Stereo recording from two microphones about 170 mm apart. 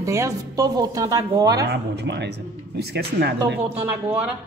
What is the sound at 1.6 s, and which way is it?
Speech, 90° right.